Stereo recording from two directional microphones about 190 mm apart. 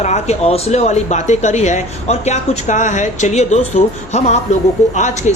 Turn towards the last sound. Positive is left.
turn(degrees=40)  # may be behind; listen again after turning